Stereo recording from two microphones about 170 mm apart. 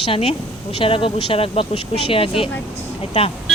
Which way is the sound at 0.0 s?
35° left (ahead or behind).